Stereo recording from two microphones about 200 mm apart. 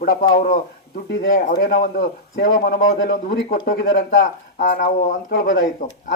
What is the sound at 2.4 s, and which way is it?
Speech, 65° left (ahead or behind).